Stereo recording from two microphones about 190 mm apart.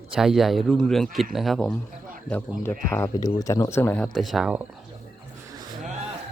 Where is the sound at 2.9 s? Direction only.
15° left (ahead or behind); by 4.7 s 5° right (ahead or behind).